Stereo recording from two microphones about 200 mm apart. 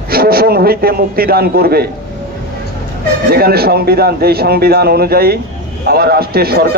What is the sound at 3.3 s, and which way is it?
A man's voice, 50° right (ahead or behind).